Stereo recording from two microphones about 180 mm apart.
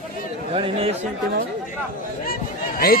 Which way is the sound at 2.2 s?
55° left (ahead or behind).